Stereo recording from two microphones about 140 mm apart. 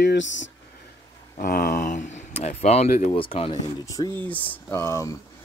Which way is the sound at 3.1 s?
40° left (ahead or behind).